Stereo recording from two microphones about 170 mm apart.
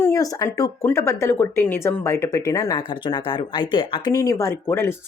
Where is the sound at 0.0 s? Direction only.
20° left (ahead or behind).